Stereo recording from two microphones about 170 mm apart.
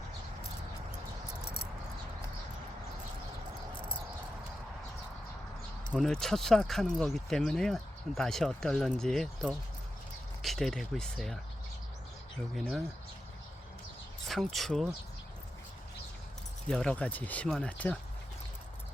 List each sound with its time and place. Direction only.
5.9 s speech: centre (ahead or behind)
12.5 s speech: centre (ahead or behind)
14.3 s speech: centre (ahead or behind)
16.6 s speech: 5° left (ahead or behind)